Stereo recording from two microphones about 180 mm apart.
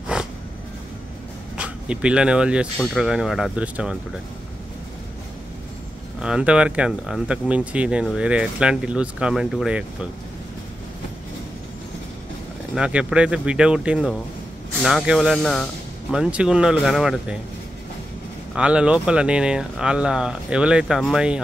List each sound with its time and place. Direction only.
0.0 s a sound: 5° right (ahead or behind)
1.6 s speech: 5° right (ahead or behind)
6.2 s speech: 5° right (ahead or behind)
12.7 s speech: 5° right (ahead or behind)
18.5 s speech: 5° right (ahead or behind)